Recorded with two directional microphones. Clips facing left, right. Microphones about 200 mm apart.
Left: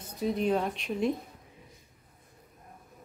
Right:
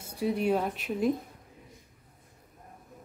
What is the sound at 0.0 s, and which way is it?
Speech, 10° right (ahead or behind).